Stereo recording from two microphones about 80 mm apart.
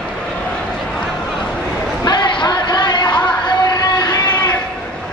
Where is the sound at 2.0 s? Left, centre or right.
Left.